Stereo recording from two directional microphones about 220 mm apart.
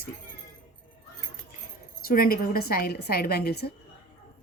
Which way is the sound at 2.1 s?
40° left (ahead or behind).